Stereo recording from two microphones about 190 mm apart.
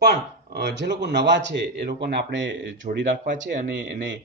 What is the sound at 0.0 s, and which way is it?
Speech, 60° right (ahead or behind).